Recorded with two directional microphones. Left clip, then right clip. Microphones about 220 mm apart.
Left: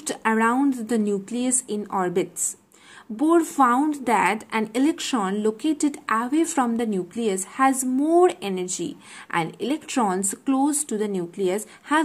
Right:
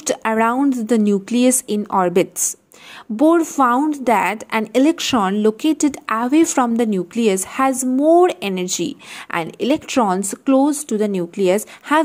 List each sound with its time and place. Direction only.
0.0 s a woman's voice: 35° right (ahead or behind)